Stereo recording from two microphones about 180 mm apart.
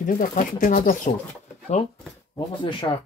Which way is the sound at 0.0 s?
45° left (ahead or behind).